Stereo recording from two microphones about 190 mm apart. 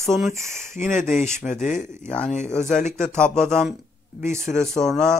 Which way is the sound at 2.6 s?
40° left (ahead or behind).